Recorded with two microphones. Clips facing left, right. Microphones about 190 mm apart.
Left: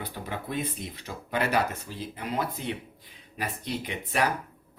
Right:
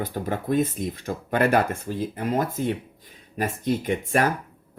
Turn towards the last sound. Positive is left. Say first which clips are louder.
# right 6 dB
turn(degrees=-50)  # may be behind; listen again after turning